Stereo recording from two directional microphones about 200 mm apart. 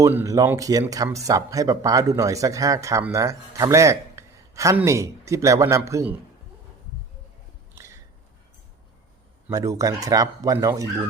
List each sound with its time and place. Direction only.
0.0 s speech: 15° right (ahead or behind)
9.5 s speech: 15° right (ahead or behind)